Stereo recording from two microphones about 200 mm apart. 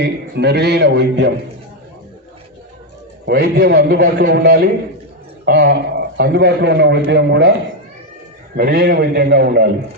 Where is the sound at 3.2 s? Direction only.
55° right (ahead or behind).